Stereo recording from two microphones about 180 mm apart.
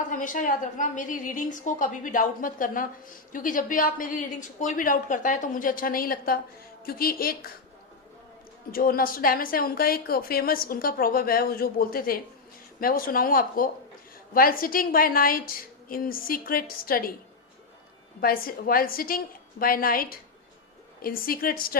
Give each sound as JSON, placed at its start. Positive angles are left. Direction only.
{"t": 0.1, "sound": "a woman's voice", "side_deg": 45}
{"t": 8.7, "sound": "a woman's voice", "side_deg": 55}
{"t": 18.2, "sound": "a woman's voice", "side_deg": 55}